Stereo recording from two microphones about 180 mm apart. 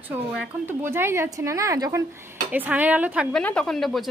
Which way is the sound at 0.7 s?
10° right (ahead or behind).